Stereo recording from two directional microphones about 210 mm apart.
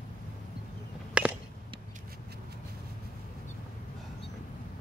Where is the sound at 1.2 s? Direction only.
5° right (ahead or behind).